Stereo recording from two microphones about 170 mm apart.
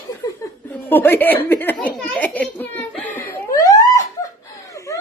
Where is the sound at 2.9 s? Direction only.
10° left (ahead or behind).